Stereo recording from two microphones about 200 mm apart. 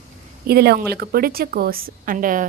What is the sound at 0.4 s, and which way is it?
A woman's voice, 50° right (ahead or behind).